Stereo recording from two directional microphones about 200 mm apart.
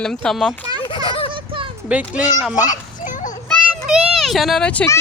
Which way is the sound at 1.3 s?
25° right (ahead or behind).